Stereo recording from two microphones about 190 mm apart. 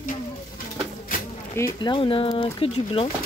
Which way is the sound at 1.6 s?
20° left (ahead or behind).